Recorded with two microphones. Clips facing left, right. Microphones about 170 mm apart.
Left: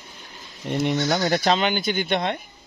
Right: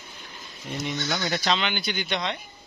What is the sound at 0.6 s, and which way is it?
Speech, 55° left (ahead or behind).